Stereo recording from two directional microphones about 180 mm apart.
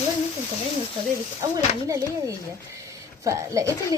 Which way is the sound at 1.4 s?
20° right (ahead or behind).